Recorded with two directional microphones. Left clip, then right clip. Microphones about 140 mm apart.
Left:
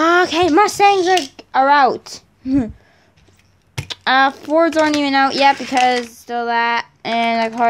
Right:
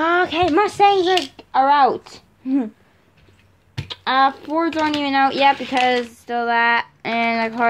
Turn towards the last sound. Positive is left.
turn(degrees=15)  # may be behind; listen again after turning